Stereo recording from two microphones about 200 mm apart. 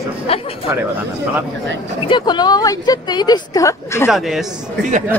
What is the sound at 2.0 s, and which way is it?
A woman's voice, 20° left (ahead or behind).